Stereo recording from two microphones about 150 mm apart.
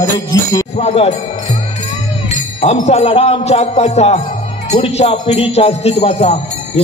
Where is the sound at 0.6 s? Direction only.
45° left (ahead or behind).